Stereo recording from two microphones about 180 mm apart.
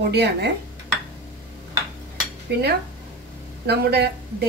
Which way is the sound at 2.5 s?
70° right (ahead or behind).